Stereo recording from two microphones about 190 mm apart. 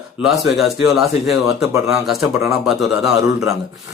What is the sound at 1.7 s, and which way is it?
Speech, 15° right (ahead or behind).